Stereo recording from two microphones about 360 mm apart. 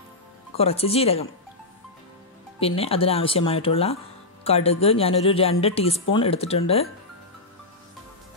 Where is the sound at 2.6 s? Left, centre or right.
Centre.